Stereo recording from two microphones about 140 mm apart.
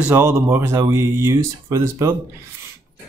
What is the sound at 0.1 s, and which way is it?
Speech, 15° right (ahead or behind).